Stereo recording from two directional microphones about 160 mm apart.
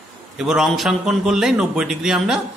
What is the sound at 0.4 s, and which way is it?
A man's voice, 5° right (ahead or behind).